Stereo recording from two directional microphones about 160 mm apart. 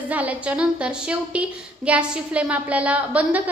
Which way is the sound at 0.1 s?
10° right (ahead or behind).